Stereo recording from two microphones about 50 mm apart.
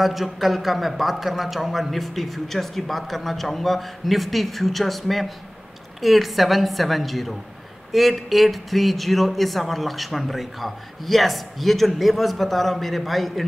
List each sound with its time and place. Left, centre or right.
0.0 s speech: centre